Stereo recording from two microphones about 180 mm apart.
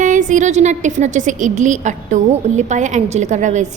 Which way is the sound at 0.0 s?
45° right (ahead or behind).